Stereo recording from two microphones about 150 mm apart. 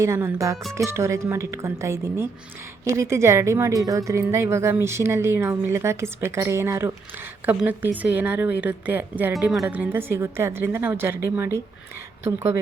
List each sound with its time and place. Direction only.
0.0 s a woman's voice: 20° right (ahead or behind)
9.4 s speech: centre (ahead or behind)
9.6 s a woman's voice: 10° right (ahead or behind)